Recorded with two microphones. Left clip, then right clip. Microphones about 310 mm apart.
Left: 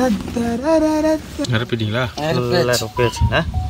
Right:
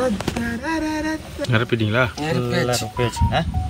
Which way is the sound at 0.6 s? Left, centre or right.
Left.